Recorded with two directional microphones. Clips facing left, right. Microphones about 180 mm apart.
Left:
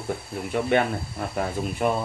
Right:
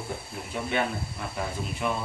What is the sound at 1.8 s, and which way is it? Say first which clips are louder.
Speech: left 6 dB; 50° left (ahead or behind).